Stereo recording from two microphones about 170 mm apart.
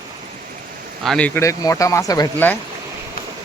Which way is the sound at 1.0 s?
5° left (ahead or behind).